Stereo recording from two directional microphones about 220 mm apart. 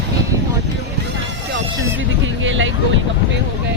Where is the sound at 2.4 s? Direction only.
60° right (ahead or behind).